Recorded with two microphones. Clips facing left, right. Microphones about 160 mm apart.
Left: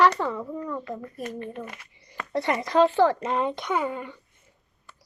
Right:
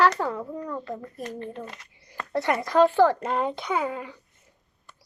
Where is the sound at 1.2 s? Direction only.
30° right (ahead or behind).